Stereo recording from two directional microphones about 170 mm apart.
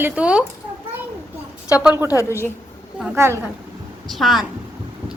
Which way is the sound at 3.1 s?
15° right (ahead or behind).